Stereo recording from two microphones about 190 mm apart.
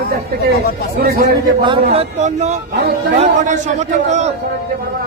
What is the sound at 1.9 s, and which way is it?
A man's voice, 35° right (ahead or behind).